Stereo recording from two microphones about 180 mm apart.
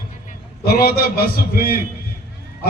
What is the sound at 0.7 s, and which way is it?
A man's voice, 55° left (ahead or behind).